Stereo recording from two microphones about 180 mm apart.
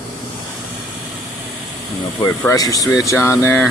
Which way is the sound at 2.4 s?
20° left (ahead or behind).